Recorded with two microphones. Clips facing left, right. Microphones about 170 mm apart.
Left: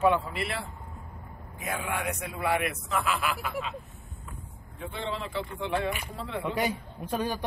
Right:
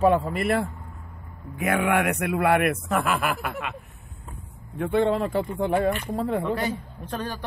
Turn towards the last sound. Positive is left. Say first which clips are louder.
# left 1 dB
turn(degrees=10)  # may be behind; listen again after turning